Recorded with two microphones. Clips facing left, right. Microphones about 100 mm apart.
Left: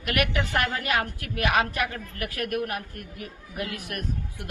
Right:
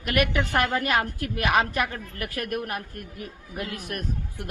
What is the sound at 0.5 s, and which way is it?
Speech, 50° right (ahead or behind).